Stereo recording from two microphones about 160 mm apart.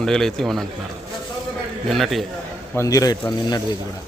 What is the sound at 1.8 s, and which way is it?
Speech, centre (ahead or behind).